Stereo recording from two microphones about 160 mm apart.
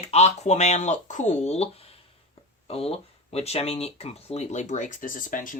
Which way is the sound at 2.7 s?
40° left (ahead or behind).